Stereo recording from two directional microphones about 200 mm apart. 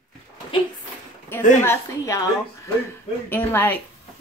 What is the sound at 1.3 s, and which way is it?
Speech, 10° left (ahead or behind).